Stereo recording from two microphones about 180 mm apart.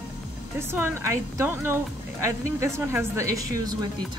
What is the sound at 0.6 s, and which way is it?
Speech, 15° right (ahead or behind).